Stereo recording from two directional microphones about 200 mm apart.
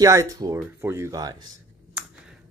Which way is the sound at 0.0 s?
15° right (ahead or behind).